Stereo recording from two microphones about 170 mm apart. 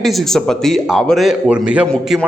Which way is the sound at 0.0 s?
Centre (ahead or behind).